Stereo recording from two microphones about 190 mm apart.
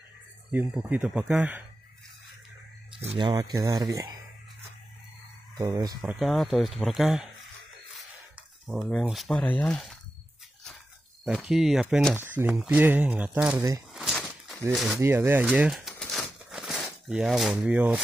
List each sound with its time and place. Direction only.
0.5 s speech: 10° right (ahead or behind)
3.2 s speech: 20° right (ahead or behind)
5.6 s speech: 20° right (ahead or behind)
5.9 s speech: centre (ahead or behind)
8.6 s speech: centre (ahead or behind)
11.2 s speech: 5° right (ahead or behind)
13.9 s a sound: centre (ahead or behind)
14.7 s speech: centre (ahead or behind)
15.0 s crumpling: 15° right (ahead or behind)